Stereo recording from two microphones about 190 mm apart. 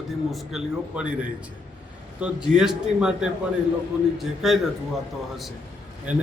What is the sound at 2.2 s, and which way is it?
A man's voice, 5° right (ahead or behind).